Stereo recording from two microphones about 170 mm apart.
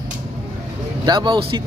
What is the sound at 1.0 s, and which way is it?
Speech, 25° right (ahead or behind).